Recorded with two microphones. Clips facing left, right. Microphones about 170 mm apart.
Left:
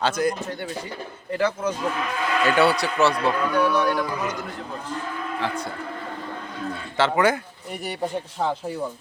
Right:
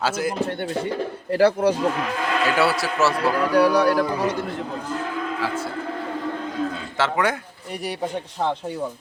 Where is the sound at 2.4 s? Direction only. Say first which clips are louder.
Left 2 dB; centre (ahead or behind).